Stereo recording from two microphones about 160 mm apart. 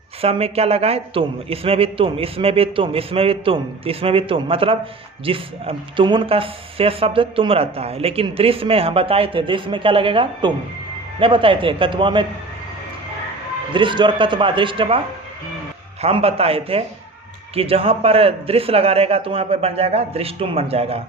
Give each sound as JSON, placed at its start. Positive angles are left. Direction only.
{"t": 0.2, "sound": "speech", "side_deg": -40}
{"t": 13.7, "sound": "speech", "side_deg": -30}